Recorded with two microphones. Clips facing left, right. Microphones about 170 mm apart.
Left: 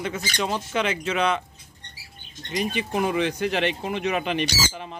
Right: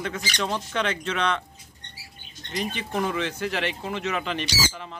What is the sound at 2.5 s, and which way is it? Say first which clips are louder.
Speech: left 4 dB; 15° left (ahead or behind).